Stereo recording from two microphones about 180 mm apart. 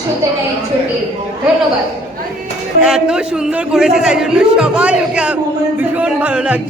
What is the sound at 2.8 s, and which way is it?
A man's voice, 5° right (ahead or behind).